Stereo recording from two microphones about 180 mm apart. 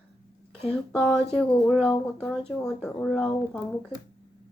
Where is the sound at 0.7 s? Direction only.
5° left (ahead or behind).